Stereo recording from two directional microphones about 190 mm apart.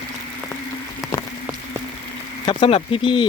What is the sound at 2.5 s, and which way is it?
Speech, 25° left (ahead or behind).